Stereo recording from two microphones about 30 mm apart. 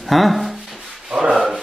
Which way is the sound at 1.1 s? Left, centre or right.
Right.